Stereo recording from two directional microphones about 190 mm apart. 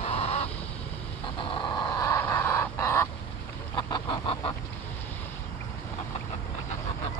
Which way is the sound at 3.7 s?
25° left (ahead or behind).